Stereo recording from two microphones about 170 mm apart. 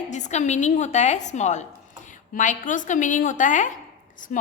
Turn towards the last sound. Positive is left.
turn(degrees=50)  # may be behind; listen again after turning